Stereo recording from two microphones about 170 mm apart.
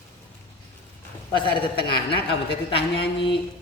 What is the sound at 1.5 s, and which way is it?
Speech, 70° left (ahead or behind).